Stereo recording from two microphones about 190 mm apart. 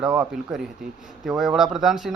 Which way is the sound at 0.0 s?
5° right (ahead or behind).